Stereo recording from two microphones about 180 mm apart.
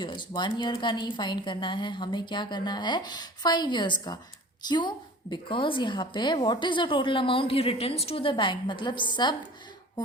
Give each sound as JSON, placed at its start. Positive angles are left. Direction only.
{"t": 0.0, "sound": "a woman's voice", "side_deg": 25}